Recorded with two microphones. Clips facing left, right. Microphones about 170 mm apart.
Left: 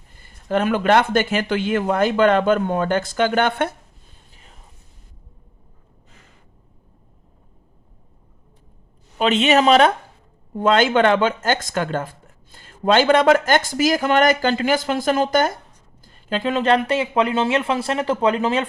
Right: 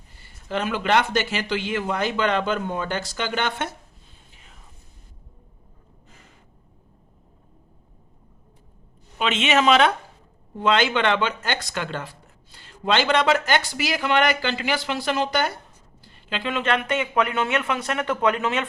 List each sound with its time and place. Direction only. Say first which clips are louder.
0.2 s speech: left 6 dB; 50° left (ahead or behind)
9.1 s speech: left 5 dB; 40° left (ahead or behind)